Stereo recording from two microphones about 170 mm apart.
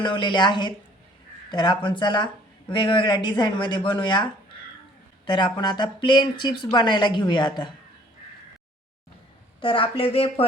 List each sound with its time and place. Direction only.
0.0 s speech: 25° left (ahead or behind)
9.6 s speech: 30° left (ahead or behind)